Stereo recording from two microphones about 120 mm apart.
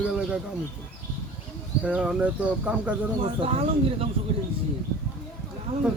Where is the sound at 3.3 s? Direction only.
55° right (ahead or behind).